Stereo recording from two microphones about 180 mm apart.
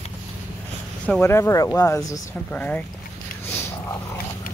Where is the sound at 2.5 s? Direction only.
10° left (ahead or behind).